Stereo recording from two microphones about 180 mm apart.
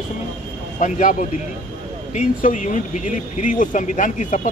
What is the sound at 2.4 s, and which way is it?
A man's voice, 45° left (ahead or behind).